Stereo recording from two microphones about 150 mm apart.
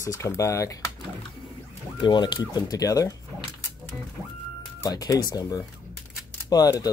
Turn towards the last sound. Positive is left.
turn(degrees=25)  # may be behind; listen again after turning